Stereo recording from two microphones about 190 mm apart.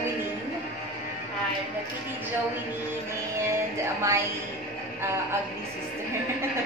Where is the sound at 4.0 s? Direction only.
15° right (ahead or behind).